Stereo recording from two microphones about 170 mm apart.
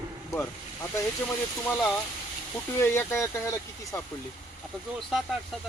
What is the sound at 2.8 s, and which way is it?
Speech, 15° left (ahead or behind).